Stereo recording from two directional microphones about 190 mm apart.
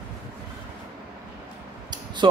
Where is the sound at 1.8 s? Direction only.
25° right (ahead or behind).